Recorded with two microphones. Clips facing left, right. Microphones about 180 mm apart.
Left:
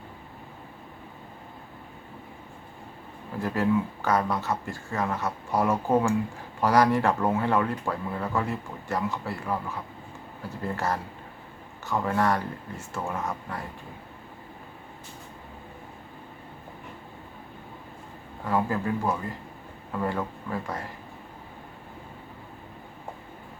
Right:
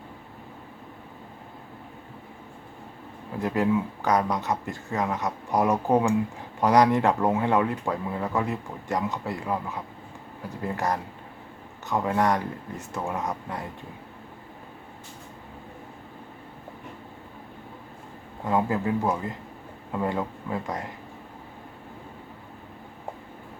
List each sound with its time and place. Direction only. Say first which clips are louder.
3.3 s speech: right 1 dB; 20° right (ahead or behind)
18.4 s speech: right 2 dB; 20° right (ahead or behind)